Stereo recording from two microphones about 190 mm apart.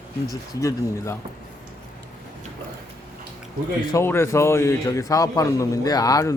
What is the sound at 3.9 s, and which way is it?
A man's voice, 15° left (ahead or behind).